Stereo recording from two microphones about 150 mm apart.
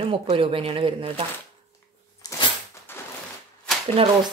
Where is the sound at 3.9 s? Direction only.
35° right (ahead or behind).